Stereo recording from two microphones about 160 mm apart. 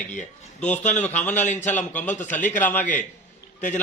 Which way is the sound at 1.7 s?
10° left (ahead or behind).